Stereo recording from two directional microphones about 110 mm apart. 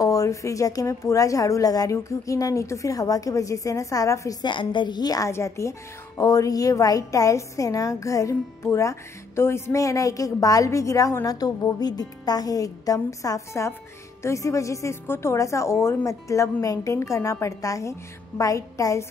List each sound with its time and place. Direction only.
0.0 s a woman's voice: 30° left (ahead or behind)